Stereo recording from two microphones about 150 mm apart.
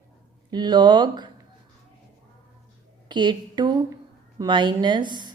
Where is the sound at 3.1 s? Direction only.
30° right (ahead or behind).